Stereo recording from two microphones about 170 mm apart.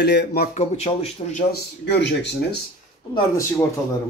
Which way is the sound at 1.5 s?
90° left.